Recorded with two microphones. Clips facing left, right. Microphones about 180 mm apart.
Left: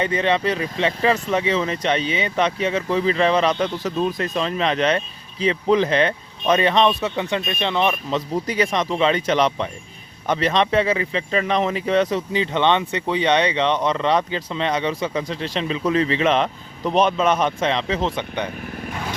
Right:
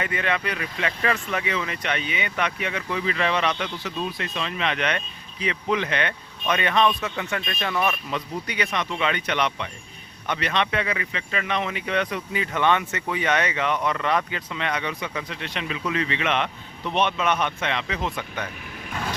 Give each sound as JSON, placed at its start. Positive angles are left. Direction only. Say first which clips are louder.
{"t": 0.0, "sound": "speech", "louder": "left 7 dB", "side_deg": 30}
{"t": 8.4, "sound": "speech", "louder": "left 6 dB", "side_deg": 40}